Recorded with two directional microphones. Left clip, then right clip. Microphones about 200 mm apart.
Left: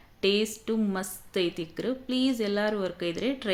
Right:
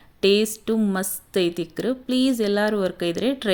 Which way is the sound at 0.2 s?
40° right (ahead or behind).